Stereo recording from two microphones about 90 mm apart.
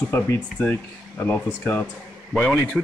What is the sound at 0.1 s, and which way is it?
Speech, 25° left (ahead or behind).